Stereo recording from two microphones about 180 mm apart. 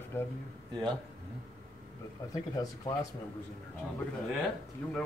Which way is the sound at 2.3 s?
20° left (ahead or behind).